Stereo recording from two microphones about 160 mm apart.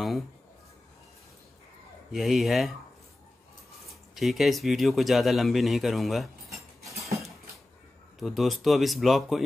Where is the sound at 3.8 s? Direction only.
Centre (ahead or behind).